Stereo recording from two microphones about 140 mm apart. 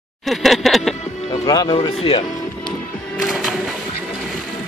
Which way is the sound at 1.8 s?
45° left (ahead or behind).